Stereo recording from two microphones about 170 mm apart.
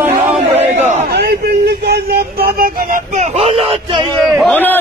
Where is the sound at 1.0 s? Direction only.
70° right (ahead or behind); by 3.5 s 40° right (ahead or behind).